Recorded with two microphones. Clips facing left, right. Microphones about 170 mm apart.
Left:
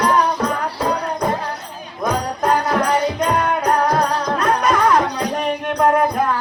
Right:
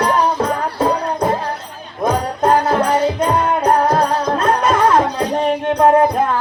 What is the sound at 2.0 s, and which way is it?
Music, 25° right (ahead or behind).